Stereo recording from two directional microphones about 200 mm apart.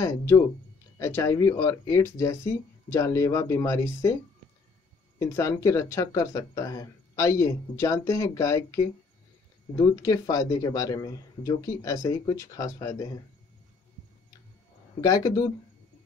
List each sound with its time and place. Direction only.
0.0 s speech: 15° left (ahead or behind)
5.2 s speech: 15° left (ahead or behind)
15.0 s speech: 20° left (ahead or behind)